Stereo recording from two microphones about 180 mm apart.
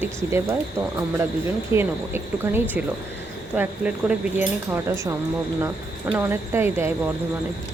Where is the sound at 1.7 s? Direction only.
15° right (ahead or behind).